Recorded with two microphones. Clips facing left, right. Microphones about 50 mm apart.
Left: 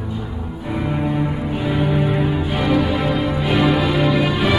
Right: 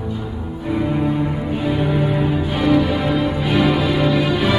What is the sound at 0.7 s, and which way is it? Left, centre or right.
Music, centre.